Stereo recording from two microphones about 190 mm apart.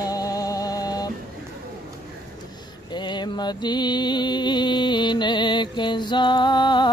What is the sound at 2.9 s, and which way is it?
Music, 25° left (ahead or behind).